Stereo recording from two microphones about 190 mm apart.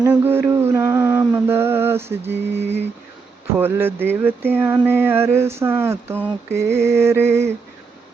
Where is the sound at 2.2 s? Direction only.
65° right (ahead or behind).